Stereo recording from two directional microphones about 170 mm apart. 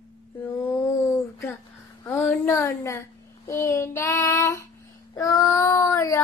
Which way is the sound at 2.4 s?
20° left (ahead or behind).